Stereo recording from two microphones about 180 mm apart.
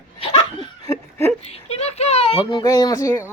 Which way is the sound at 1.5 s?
35° left (ahead or behind).